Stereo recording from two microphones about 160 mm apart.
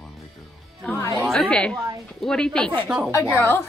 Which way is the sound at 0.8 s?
15° left (ahead or behind).